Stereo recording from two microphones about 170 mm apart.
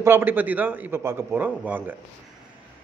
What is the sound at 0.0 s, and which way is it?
A man's voice, 10° right (ahead or behind).